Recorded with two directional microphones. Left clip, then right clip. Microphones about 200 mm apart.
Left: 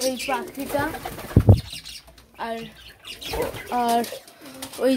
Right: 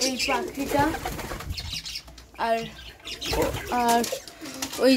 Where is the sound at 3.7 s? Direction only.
15° left (ahead or behind).